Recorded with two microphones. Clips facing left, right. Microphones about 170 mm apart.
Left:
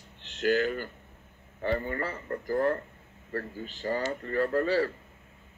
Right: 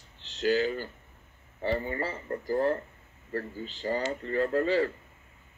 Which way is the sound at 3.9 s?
20° right (ahead or behind).